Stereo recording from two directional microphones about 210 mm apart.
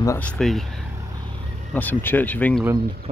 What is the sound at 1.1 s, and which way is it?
Vehicle, 20° right (ahead or behind).